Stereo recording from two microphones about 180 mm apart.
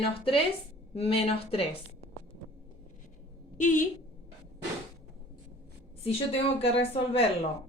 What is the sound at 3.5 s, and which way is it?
Speech, 45° left (ahead or behind).